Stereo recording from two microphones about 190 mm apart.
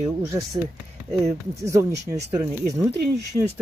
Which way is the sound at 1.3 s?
15° right (ahead or behind).